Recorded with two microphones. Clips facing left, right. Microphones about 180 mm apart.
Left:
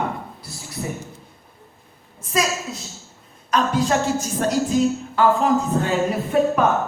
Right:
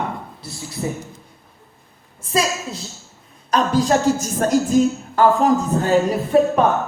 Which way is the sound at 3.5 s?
35° right (ahead or behind).